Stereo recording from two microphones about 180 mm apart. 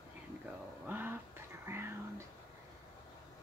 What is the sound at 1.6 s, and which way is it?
Whispering, 15° right (ahead or behind).